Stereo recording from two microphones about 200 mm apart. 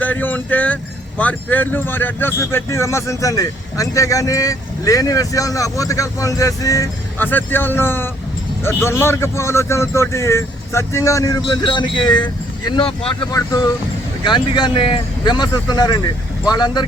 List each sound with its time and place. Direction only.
0.0 s speech: 10° left (ahead or behind); by 13.1 s 25° left (ahead or behind)
14.3 s speech: 25° left (ahead or behind)